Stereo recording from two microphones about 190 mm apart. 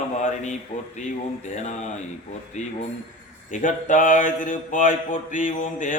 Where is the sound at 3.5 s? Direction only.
40° left (ahead or behind).